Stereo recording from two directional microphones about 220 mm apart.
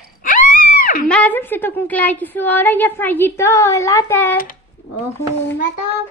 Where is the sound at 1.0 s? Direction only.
5° left (ahead or behind).